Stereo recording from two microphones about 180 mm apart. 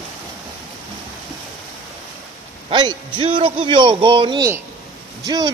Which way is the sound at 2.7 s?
30° right (ahead or behind).